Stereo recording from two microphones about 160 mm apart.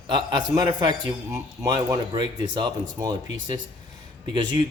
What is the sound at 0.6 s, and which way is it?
A man's voice, 25° right (ahead or behind).